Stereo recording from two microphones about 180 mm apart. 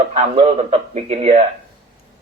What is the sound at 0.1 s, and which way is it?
Speech, 35° right (ahead or behind).